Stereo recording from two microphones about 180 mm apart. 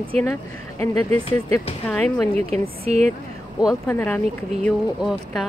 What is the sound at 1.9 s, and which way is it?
Speech, 5° left (ahead or behind).